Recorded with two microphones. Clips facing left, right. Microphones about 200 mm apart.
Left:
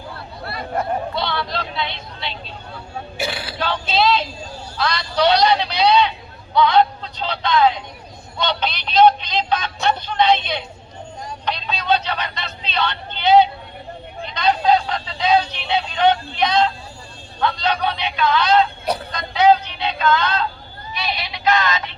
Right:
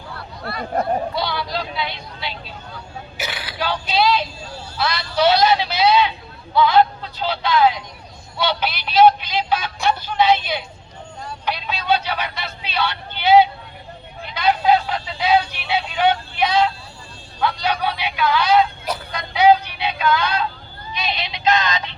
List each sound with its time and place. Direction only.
1.1 s speech: 5° right (ahead or behind)
3.2 s vehicle: 30° left (ahead or behind)
3.8 s speech: 25° left (ahead or behind)
4.8 s speech: 5° right (ahead or behind)
20.9 s synthetic singing: 20° right (ahead or behind)